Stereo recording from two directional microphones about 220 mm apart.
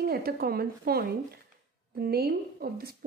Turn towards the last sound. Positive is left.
turn(degrees=-45)  # may be behind; listen again after turning